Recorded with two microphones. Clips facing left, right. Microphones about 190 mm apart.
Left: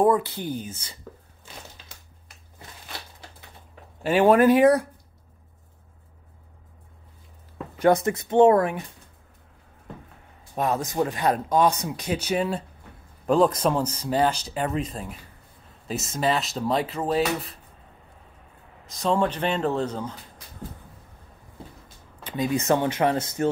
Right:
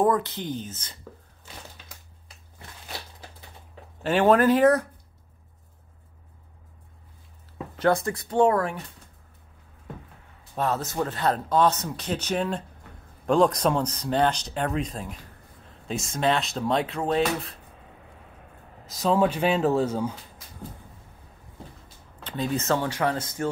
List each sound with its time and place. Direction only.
0.0 s speech: 10° left (ahead or behind)
4.0 s speech: 10° left (ahead or behind)
7.7 s speech: 15° left (ahead or behind)
10.5 s speech: 15° left (ahead or behind)
18.9 s speech: 5° right (ahead or behind)
22.2 s speech: 10° left (ahead or behind)